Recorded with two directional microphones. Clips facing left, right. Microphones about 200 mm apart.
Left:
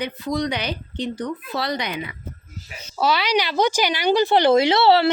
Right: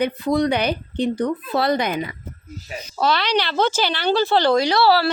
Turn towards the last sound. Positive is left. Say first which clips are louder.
# left 1 dB
turn(degrees=25)  # may be behind; listen again after turning